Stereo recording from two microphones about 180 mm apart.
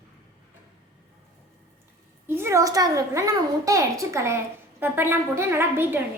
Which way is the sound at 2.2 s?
10° right (ahead or behind).